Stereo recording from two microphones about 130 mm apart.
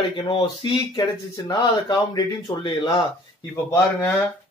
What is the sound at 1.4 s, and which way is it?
Speech, 35° left (ahead or behind).